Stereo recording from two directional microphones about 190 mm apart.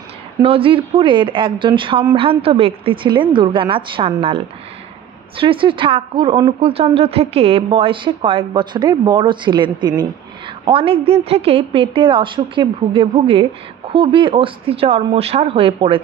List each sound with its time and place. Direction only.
0.4 s a woman's voice: 30° right (ahead or behind)
5.4 s a woman's voice: 25° right (ahead or behind)